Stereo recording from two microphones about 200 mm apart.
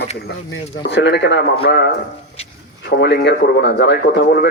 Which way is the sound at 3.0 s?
55° left (ahead or behind).